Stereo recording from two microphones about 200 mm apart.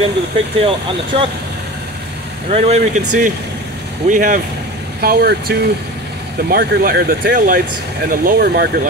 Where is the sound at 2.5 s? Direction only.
35° right (ahead or behind).